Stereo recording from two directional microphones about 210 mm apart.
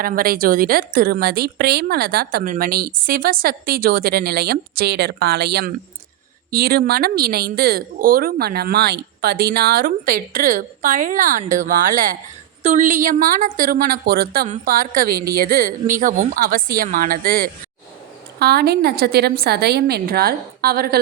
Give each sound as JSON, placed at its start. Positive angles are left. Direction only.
{"t": 0.0, "sound": "a woman's voice", "side_deg": -45}